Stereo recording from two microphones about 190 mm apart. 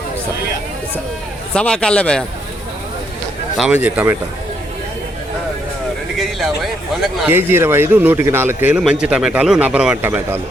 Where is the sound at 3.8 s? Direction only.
10° right (ahead or behind).